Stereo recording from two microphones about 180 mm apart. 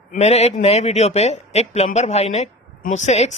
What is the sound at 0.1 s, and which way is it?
Speech, 35° left (ahead or behind).